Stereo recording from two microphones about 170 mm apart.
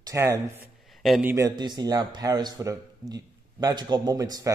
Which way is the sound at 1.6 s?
25° right (ahead or behind).